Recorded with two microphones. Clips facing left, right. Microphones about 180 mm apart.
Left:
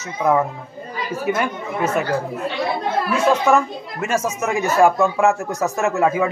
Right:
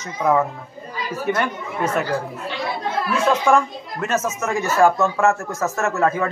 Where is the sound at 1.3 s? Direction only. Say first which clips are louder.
Even; 5° left (ahead or behind).